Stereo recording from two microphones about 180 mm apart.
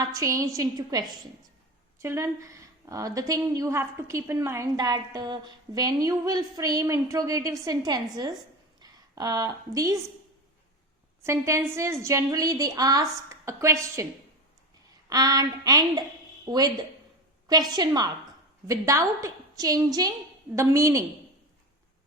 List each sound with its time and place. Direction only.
0.0 s a woman's voice: 20° right (ahead or behind)
11.2 s a woman's voice: 15° right (ahead or behind)
15.1 s a woman's voice: 20° right (ahead or behind)